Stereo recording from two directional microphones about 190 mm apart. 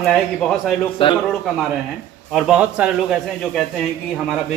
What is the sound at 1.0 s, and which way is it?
Speech, 30° left (ahead or behind).